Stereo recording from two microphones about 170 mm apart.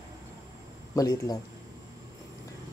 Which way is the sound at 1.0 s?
20° left (ahead or behind).